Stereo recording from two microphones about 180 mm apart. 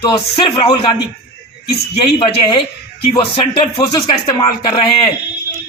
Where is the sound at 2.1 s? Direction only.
25° left (ahead or behind).